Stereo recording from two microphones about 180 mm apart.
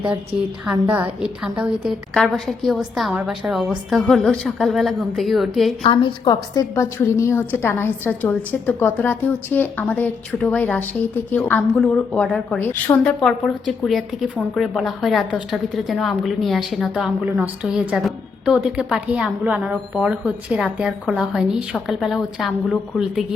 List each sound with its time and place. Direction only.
0.6 s a woman's voice: 5° right (ahead or behind)
5.8 s a woman's voice: 25° left (ahead or behind); by 23.2 s centre (ahead or behind)